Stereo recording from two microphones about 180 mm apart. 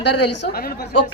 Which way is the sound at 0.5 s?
55° left (ahead or behind).